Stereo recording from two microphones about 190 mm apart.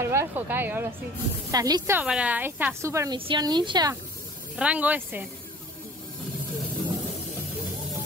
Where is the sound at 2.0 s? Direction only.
5° right (ahead or behind).